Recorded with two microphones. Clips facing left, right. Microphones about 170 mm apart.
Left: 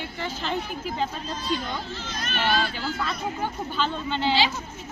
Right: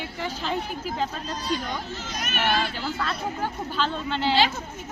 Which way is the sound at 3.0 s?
5° right (ahead or behind).